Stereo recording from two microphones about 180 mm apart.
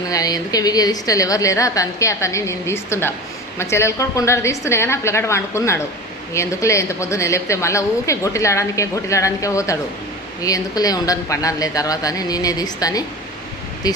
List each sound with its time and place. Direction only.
0.1 s a woman's voice: 20° left (ahead or behind)